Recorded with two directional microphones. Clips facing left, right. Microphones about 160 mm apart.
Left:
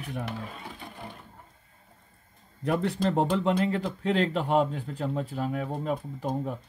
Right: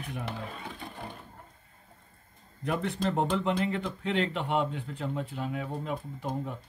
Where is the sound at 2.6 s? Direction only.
35° left (ahead or behind).